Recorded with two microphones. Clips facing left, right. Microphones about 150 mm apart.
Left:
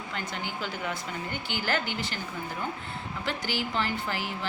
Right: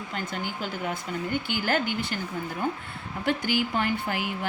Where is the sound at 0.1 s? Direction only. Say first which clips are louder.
Right 2 dB; 45° right (ahead or behind).